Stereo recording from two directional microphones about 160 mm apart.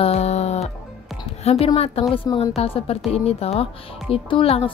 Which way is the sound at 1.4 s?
40° left (ahead or behind).